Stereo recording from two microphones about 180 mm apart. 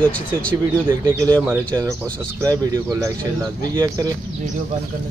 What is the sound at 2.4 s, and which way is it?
Speech, 20° right (ahead or behind).